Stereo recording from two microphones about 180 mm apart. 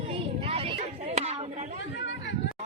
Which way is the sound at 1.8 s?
90° left.